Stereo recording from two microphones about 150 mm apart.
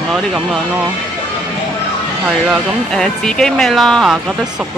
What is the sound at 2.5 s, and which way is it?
Speech, 5° left (ahead or behind).